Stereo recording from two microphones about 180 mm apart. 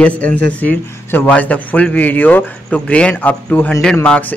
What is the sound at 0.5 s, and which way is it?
A man's voice, 10° left (ahead or behind).